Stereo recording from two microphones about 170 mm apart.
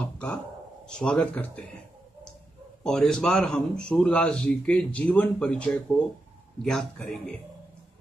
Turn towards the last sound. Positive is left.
turn(degrees=5)  # may be behind; listen again after turning